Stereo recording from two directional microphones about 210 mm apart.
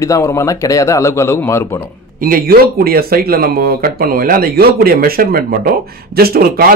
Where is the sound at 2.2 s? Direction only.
45° right (ahead or behind).